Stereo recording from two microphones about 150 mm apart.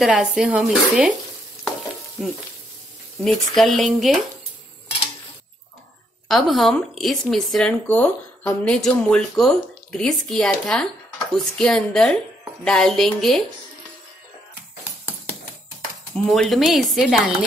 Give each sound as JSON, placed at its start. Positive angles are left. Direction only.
{"t": 0.0, "sound": "speech", "side_deg": -5}
{"t": 2.2, "sound": "speech", "side_deg": 5}
{"t": 6.5, "sound": "speech", "side_deg": 0}
{"t": 16.3, "sound": "speech", "side_deg": 0}